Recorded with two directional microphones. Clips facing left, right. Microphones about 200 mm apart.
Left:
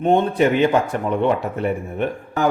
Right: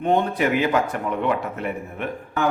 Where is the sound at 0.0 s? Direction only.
25° left (ahead or behind).